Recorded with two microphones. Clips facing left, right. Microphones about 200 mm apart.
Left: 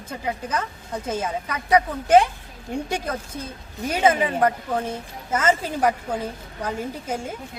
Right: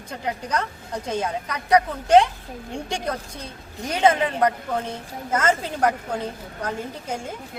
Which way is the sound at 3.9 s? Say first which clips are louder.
Even; 5° left (ahead or behind).